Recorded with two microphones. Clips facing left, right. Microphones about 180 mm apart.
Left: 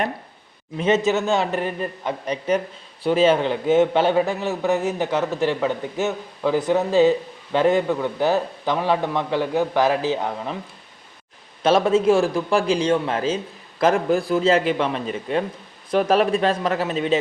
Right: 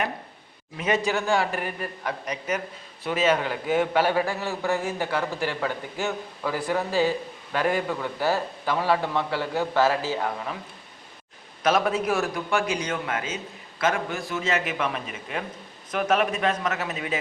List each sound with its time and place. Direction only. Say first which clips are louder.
0.8 s a man's voice: left 6 dB; 25° left (ahead or behind)
11.6 s speech: left 6 dB; 25° left (ahead or behind)